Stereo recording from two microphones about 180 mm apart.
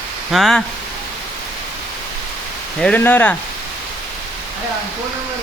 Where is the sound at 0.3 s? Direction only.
Centre (ahead or behind).